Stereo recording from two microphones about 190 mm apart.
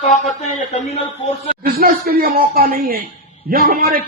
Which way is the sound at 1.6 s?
50° right (ahead or behind).